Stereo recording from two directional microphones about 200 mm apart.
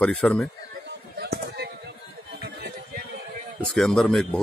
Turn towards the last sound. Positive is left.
turn(degrees=0)  # may be behind; listen again after turning